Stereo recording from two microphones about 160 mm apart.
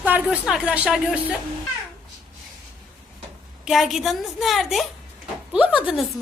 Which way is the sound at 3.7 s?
Centre (ahead or behind).